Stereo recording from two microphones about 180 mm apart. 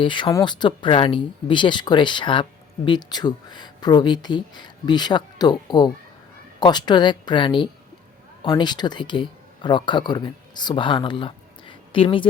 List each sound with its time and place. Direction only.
0.0 s speech: 25° left (ahead or behind)